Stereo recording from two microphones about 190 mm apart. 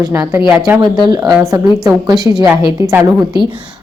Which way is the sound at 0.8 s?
20° right (ahead or behind).